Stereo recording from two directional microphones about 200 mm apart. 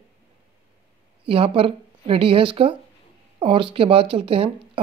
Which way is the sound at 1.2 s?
25° right (ahead or behind).